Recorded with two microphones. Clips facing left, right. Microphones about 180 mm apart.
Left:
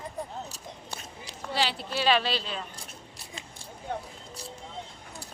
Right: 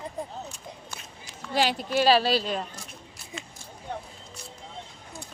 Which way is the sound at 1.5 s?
45° right (ahead or behind).